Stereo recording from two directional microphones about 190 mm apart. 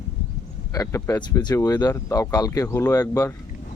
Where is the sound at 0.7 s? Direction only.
15° left (ahead or behind).